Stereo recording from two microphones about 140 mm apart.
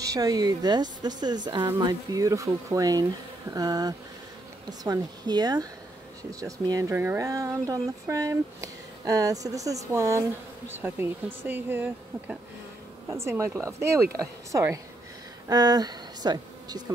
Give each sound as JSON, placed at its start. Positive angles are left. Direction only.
{"t": 0.1, "sound": "speech", "side_deg": -25}